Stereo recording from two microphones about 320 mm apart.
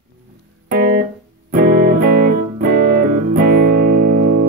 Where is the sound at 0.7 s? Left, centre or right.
Right.